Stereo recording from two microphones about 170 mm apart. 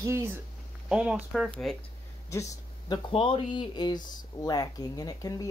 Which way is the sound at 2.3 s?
20° left (ahead or behind).